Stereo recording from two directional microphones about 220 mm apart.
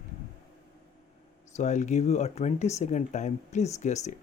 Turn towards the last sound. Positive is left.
turn(degrees=30)  # may be behind; listen again after turning